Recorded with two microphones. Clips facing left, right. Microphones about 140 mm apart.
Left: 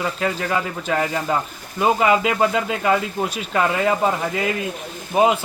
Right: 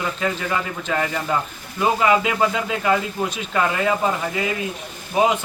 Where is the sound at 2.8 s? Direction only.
5° left (ahead or behind).